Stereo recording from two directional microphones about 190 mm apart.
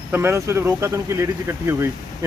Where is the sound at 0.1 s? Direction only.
10° right (ahead or behind).